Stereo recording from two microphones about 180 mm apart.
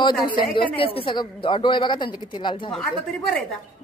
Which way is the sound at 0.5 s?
30° left (ahead or behind).